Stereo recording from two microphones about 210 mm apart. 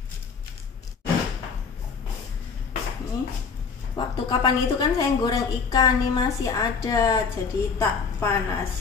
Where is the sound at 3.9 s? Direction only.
20° left (ahead or behind).